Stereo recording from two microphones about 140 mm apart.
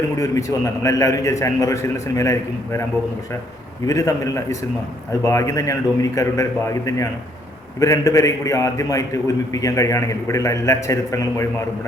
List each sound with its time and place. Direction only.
0.2 s a man's voice: 20° left (ahead or behind)
3.8 s a man's voice: 25° left (ahead or behind)